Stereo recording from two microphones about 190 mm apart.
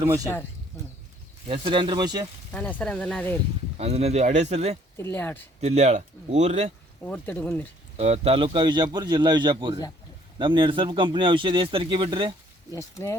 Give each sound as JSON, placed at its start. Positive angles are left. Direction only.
{"t": 1.5, "sound": "speech", "side_deg": -30}
{"t": 2.5, "sound": "speech", "side_deg": 5}
{"t": 3.8, "sound": "speech", "side_deg": -35}
{"t": 4.9, "sound": "speech", "side_deg": 10}
{"t": 5.5, "sound": "speech", "side_deg": -35}
{"t": 7.0, "sound": "speech", "side_deg": 10}
{"t": 7.9, "sound": "speech", "side_deg": -35}
{"t": 12.7, "sound": "speech", "side_deg": 15}